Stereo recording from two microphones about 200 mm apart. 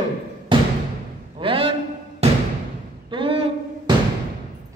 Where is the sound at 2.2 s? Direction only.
30° right (ahead or behind).